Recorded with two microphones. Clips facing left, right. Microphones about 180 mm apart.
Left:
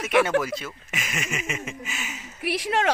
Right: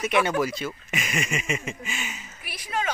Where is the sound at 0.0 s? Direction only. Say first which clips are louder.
Left 3 dB; 80° left.